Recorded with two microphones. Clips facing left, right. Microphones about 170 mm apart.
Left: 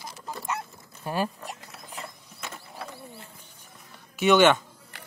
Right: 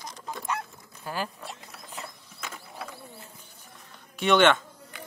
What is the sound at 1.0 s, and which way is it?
Speech, 25° left (ahead or behind).